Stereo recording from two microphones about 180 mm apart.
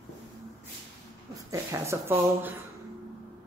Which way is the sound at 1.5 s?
15° right (ahead or behind).